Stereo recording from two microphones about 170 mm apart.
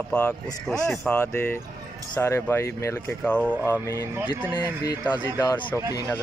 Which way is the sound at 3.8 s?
20° left (ahead or behind).